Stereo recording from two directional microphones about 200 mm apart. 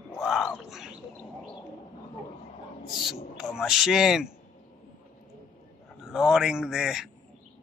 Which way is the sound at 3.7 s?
Centre (ahead or behind).